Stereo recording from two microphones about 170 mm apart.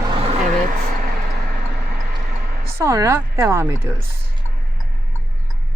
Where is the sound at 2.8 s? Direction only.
15° right (ahead or behind).